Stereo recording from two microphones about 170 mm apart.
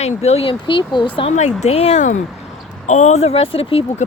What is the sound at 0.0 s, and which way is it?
Speech, 40° left (ahead or behind).